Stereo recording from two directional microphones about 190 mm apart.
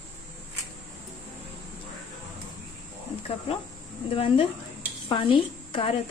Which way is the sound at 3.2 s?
30° left (ahead or behind).